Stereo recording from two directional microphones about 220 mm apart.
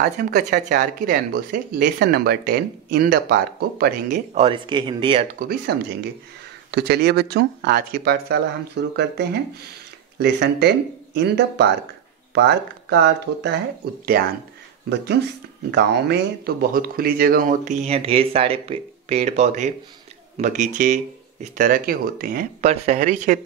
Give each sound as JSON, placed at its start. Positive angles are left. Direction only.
{"t": 0.0, "sound": "speech", "side_deg": -40}
{"t": 5.7, "sound": "speech", "side_deg": -50}
{"t": 15.7, "sound": "speech", "side_deg": -50}
{"t": 22.6, "sound": "speech", "side_deg": -30}